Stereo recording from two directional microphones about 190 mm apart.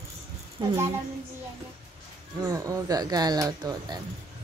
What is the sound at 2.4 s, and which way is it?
Speech, 15° right (ahead or behind).